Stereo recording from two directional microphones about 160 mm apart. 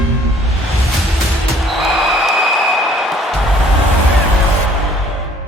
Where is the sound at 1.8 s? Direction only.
Centre (ahead or behind).